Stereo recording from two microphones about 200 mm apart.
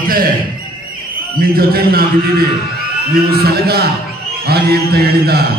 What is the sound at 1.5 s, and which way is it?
Speech, 50° right (ahead or behind).